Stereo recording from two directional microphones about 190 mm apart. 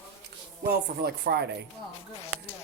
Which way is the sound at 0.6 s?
55° right (ahead or behind).